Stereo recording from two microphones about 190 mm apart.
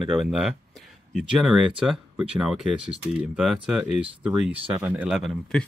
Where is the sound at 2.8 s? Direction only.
30° right (ahead or behind).